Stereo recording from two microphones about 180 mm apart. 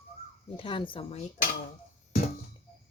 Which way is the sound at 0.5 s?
30° left (ahead or behind).